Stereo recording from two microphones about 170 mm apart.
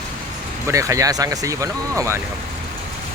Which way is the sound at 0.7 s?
20° right (ahead or behind).